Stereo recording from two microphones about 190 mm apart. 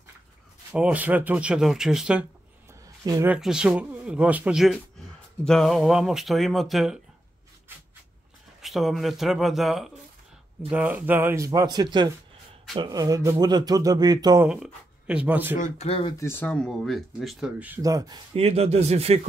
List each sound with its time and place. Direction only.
0.7 s speech: 5° right (ahead or behind)
3.1 s speech: 15° right (ahead or behind)
3.3 s speech: 5° right (ahead or behind)
8.5 s speech: centre (ahead or behind); by 14.4 s 20° right (ahead or behind)
14.4 s speech: 5° right (ahead or behind)
15.5 s speech: 35° left (ahead or behind)
16.2 s speech: 10° left (ahead or behind); by 17.7 s 5° right (ahead or behind)
17.8 s speech: 20° right (ahead or behind)